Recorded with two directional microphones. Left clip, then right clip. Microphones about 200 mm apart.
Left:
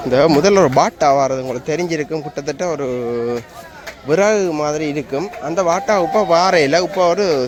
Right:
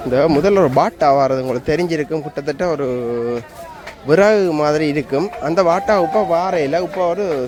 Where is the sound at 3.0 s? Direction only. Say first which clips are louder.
Even; 5° right (ahead or behind).